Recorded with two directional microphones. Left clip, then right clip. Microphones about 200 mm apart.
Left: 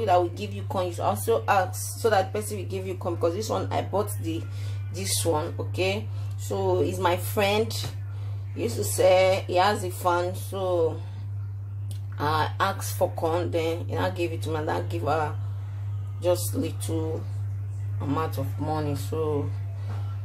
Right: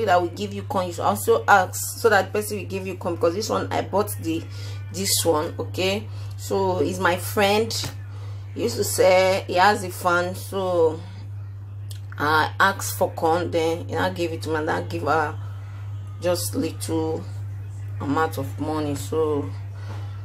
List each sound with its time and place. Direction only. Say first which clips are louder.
0.0 s speech: right 3 dB; 15° right (ahead or behind)
12.2 s speech: right 6 dB; 15° right (ahead or behind)